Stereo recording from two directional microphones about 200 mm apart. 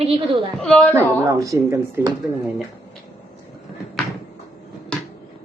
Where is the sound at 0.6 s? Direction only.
5° left (ahead or behind).